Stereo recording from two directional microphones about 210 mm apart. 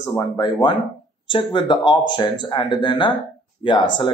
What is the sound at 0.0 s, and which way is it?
Speech, 20° left (ahead or behind).